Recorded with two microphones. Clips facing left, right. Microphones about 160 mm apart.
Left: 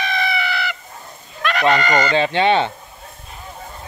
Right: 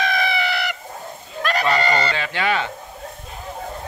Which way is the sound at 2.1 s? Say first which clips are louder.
Left 7 dB; 25° left (ahead or behind).